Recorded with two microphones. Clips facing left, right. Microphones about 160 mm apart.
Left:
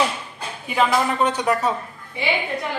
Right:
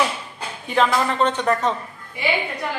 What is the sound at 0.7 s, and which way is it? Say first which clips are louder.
Speech: even; 10° left (ahead or behind).